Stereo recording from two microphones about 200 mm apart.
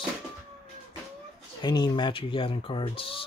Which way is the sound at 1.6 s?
20° left (ahead or behind).